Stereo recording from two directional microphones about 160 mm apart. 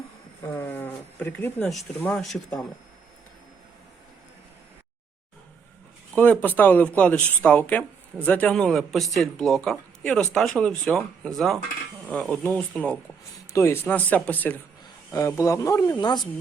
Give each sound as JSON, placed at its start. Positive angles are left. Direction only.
{"t": 0.5, "sound": "speech", "side_deg": 10}
{"t": 6.1, "sound": "speech", "side_deg": 10}
{"t": 15.4, "sound": "speech", "side_deg": 20}